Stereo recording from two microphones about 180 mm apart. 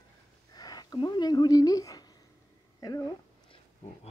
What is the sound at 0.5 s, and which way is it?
Speech, 20° left (ahead or behind).